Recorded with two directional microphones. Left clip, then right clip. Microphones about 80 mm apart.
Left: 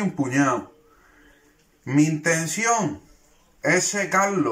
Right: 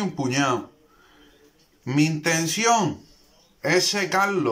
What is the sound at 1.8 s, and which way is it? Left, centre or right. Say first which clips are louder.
Speech: left 2 dB; centre.